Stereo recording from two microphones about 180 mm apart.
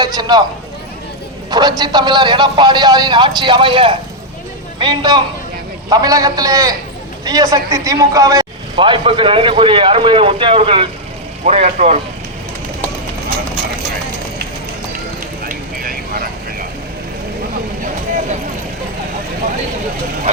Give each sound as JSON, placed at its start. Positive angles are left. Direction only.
{"t": 0.0, "sound": "speech", "side_deg": -20}
{"t": 1.5, "sound": "a man's voice", "side_deg": -20}
{"t": 15.4, "sound": "vehicle", "side_deg": -55}